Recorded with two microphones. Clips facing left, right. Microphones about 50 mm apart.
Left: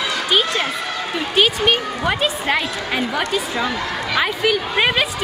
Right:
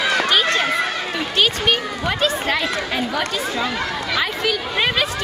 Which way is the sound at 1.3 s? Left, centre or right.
Centre.